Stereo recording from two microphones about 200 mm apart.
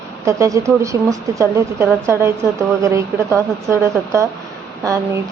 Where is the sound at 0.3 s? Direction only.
15° right (ahead or behind).